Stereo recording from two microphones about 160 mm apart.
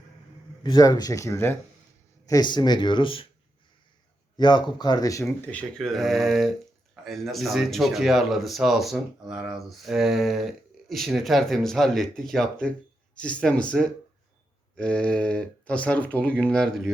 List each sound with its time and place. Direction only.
0.6 s speech: 25° left (ahead or behind)
4.4 s speech: 30° left (ahead or behind)
5.5 s speech: 5° left (ahead or behind)